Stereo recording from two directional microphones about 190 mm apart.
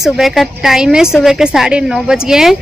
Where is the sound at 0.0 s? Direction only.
Centre (ahead or behind).